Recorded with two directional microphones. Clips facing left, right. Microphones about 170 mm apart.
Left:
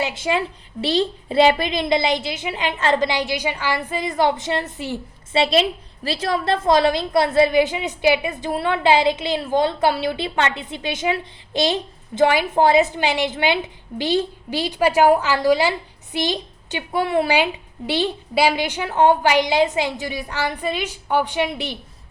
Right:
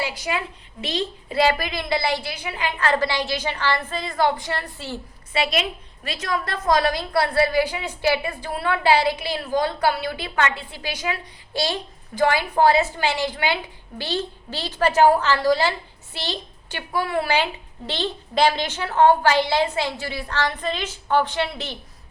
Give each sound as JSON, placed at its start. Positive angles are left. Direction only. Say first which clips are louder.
{"t": 0.0, "sound": "a woman's voice", "louder": "left 5 dB", "side_deg": 25}